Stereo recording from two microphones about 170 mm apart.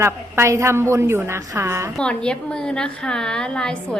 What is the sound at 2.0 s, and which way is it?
A woman's voice, 5° left (ahead or behind).